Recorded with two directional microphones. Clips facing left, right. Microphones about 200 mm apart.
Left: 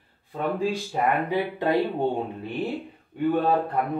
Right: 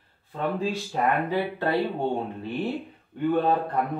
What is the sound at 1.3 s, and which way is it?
Speech, 15° left (ahead or behind).